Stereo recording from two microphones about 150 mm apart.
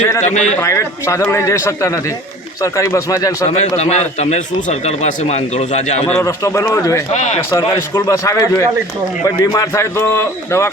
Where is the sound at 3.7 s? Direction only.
45° left (ahead or behind).